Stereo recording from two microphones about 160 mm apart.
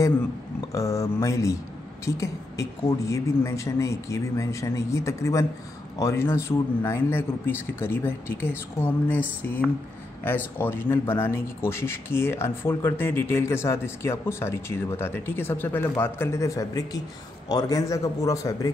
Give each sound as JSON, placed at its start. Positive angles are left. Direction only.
{"t": 0.7, "sound": "speech", "side_deg": 20}
{"t": 10.2, "sound": "speech", "side_deg": 15}